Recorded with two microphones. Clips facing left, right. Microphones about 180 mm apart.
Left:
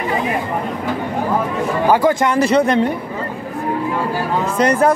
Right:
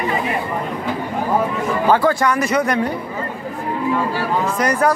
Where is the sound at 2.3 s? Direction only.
30° left (ahead or behind).